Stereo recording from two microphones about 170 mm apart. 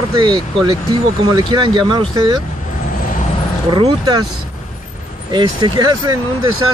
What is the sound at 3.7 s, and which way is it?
Speech, 30° right (ahead or behind).